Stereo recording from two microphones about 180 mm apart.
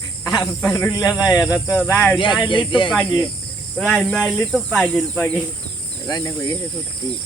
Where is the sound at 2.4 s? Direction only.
25° left (ahead or behind).